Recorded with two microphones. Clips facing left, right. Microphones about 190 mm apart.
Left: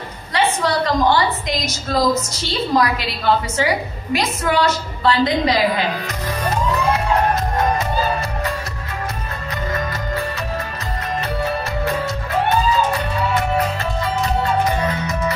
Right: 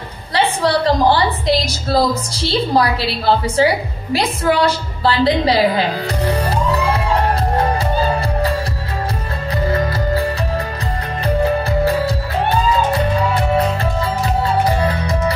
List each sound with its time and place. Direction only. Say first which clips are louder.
0.3 s a woman's voice: right 3 dB; 35° right (ahead or behind)
9.7 s music: right 6 dB; 35° right (ahead or behind)
11.2 s music: right 9 dB; 35° right (ahead or behind)